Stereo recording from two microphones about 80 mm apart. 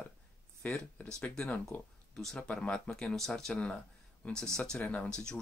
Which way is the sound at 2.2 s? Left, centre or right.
Centre.